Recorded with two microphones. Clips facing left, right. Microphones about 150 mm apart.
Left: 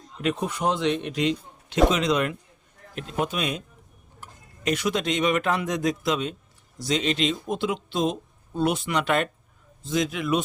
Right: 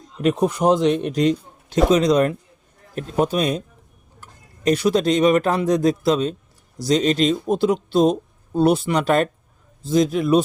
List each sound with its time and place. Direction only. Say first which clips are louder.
0.2 s speech: right 7 dB; 40° right (ahead or behind)
4.6 s speech: right 8 dB; 35° right (ahead or behind)